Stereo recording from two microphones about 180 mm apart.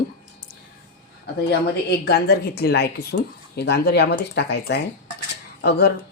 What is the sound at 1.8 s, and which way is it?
Speech, 60° left (ahead or behind).